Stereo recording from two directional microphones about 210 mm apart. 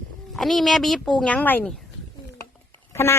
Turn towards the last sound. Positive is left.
turn(degrees=10)  # may be behind; listen again after turning